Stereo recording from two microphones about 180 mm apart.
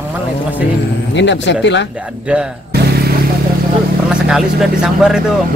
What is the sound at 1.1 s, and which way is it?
Speech, 80° left.